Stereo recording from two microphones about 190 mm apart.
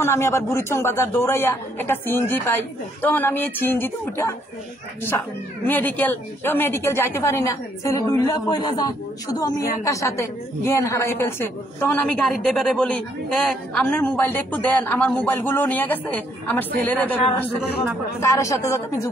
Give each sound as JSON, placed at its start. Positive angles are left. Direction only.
{"t": 0.0, "sound": "a woman's voice", "side_deg": 15}
{"t": 5.7, "sound": "a woman's voice", "side_deg": 10}
{"t": 18.2, "sound": "a woman's voice", "side_deg": 15}